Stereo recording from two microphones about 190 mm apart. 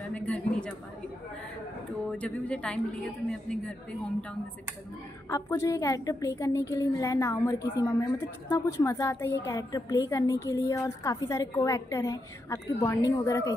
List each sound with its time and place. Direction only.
0.1 s a sound: 5° left (ahead or behind)
2.0 s a woman's voice: 5° left (ahead or behind)
5.3 s a woman's voice: 15° left (ahead or behind)